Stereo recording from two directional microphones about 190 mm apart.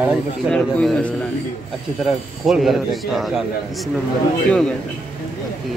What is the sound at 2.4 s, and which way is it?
A man's voice, centre (ahead or behind).